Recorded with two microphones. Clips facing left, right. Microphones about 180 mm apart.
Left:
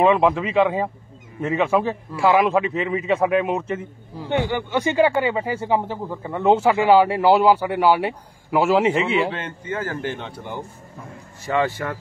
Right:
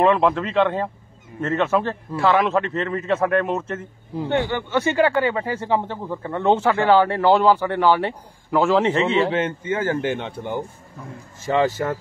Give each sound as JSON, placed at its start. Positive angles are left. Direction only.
{"t": 0.0, "sound": "a man's voice", "side_deg": 5}
{"t": 9.3, "sound": "speech", "side_deg": -25}
{"t": 11.5, "sound": "speech", "side_deg": -30}